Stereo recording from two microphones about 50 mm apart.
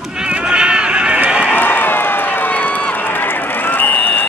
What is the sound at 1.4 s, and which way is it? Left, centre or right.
Run, left.